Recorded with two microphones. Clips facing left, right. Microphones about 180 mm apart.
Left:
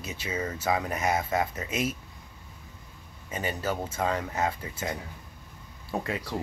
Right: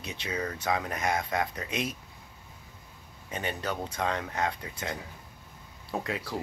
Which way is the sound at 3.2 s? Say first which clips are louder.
Left 2 dB; 5° left (ahead or behind).